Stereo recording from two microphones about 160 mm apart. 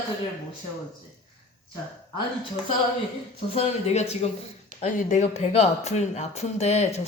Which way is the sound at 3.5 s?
40° left (ahead or behind).